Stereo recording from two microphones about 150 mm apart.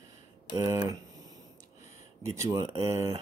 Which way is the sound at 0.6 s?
20° right (ahead or behind).